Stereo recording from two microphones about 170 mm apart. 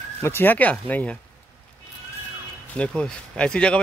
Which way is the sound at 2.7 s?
5° left (ahead or behind).